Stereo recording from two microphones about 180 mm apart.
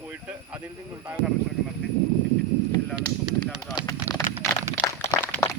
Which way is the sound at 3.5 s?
20° left (ahead or behind).